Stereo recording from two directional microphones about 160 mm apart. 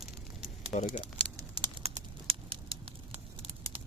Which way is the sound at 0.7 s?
50° left (ahead or behind).